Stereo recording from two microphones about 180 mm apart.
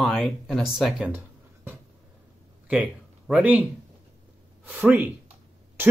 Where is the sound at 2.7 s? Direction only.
5° right (ahead or behind).